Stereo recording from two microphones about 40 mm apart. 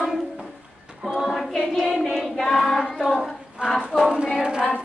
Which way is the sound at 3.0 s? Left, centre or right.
Centre.